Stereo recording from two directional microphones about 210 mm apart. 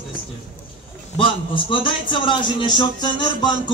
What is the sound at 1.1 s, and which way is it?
A man's voice, 25° left (ahead or behind).